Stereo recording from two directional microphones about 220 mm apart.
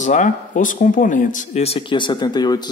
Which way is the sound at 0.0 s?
35° left (ahead or behind).